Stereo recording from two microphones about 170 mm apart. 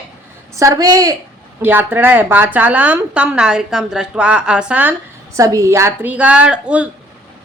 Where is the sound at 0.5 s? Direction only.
20° right (ahead or behind).